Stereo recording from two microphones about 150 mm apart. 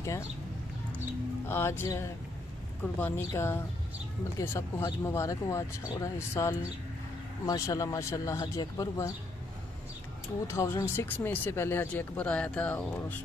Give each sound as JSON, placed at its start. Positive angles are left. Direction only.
{"t": 1.5, "sound": "speech", "side_deg": 15}
{"t": 10.4, "sound": "speech", "side_deg": 15}